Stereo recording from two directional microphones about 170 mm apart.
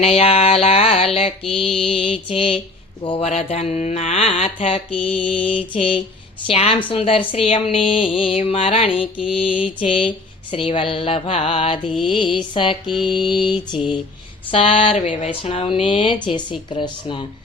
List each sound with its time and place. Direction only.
0.0 s speech: 35° left (ahead or behind)
12.0 s mantra: 30° left (ahead or behind)
14.5 s speech: 35° left (ahead or behind)